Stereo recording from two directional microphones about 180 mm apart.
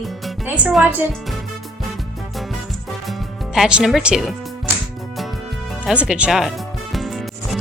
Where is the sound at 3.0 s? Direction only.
Centre (ahead or behind).